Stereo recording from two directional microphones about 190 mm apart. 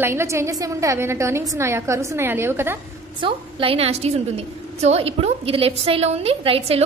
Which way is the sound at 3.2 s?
30° right (ahead or behind).